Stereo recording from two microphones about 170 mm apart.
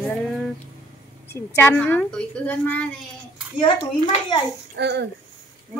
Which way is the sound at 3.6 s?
25° left (ahead or behind).